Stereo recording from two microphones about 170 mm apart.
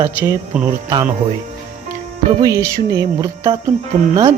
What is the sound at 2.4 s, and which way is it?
Music, 20° right (ahead or behind).